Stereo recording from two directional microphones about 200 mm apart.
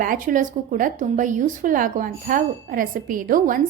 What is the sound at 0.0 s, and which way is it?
Speech, 40° right (ahead or behind).